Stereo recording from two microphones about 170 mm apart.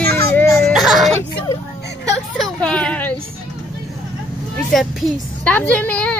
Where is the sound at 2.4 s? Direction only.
5° left (ahead or behind).